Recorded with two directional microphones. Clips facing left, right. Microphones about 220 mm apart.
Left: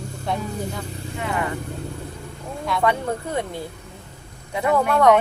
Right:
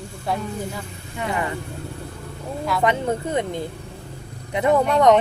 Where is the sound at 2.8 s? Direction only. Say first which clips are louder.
Right 1 dB; 20° right (ahead or behind).